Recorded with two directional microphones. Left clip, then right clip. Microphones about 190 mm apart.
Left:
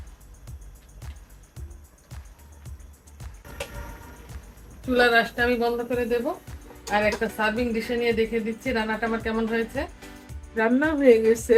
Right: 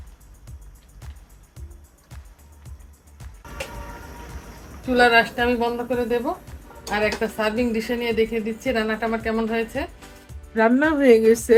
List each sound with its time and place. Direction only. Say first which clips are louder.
4.9 s speech: right 3 dB; 35° right (ahead or behind)